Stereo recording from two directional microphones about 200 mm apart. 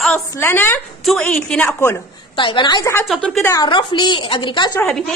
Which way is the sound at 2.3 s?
25° left (ahead or behind).